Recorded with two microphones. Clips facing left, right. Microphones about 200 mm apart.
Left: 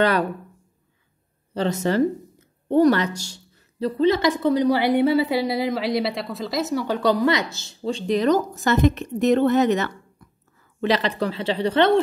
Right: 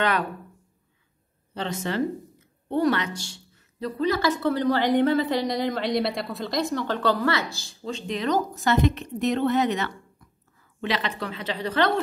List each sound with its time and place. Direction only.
1.5 s a woman's voice: 40° left (ahead or behind)